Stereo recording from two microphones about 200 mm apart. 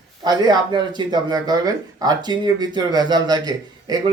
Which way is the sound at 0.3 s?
20° right (ahead or behind).